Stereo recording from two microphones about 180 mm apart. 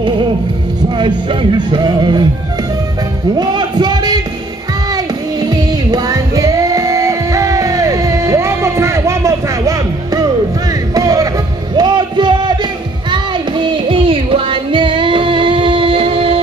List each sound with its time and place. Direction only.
0.8 s music: 25° right (ahead or behind)
3.3 s a sound: 25° right (ahead or behind)
4.9 s music: 20° right (ahead or behind)